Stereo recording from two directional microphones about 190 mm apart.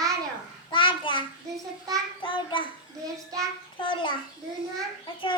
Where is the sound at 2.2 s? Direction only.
25° left (ahead or behind).